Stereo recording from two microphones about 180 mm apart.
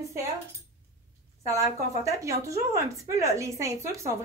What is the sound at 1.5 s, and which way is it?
Speech, 15° right (ahead or behind).